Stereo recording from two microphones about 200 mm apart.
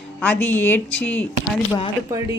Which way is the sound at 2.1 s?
15° right (ahead or behind).